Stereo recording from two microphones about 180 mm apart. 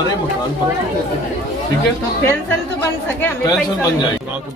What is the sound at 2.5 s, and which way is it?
Speech, 10° left (ahead or behind).